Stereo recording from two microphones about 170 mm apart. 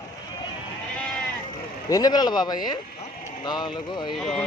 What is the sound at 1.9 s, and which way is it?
Speech, 20° left (ahead or behind).